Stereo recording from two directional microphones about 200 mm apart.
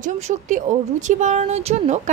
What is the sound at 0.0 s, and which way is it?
Speech, 40° right (ahead or behind).